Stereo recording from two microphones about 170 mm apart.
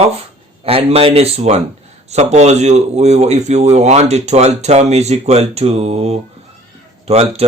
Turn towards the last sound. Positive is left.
turn(degrees=-40)  # may be behind; listen again after turning